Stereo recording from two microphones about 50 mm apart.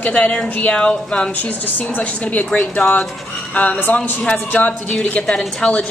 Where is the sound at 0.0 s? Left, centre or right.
Left.